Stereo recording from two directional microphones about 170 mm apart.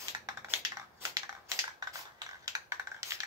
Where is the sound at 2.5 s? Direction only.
20° right (ahead or behind).